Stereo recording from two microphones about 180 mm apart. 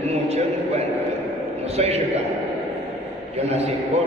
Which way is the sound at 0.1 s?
35° right (ahead or behind).